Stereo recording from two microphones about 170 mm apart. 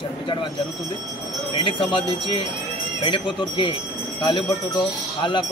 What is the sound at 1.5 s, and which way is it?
Speech, 30° left (ahead or behind).